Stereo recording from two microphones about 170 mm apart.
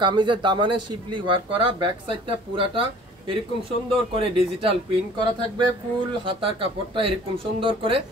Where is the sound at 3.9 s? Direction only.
30° right (ahead or behind).